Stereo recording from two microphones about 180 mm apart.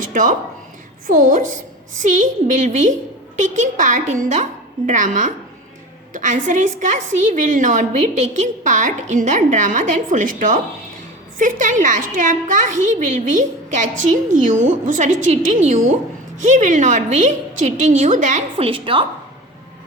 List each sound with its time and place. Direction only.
0.1 s a woman's voice: 45° right (ahead or behind); by 19.0 s 30° right (ahead or behind)